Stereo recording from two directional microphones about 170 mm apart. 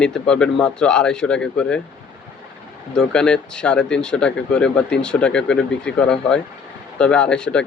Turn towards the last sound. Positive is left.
turn(degrees=5)  # may be behind; listen again after turning